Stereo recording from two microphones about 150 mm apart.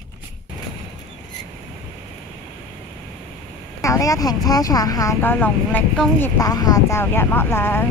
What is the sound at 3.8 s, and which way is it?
Speech, 20° left (ahead or behind).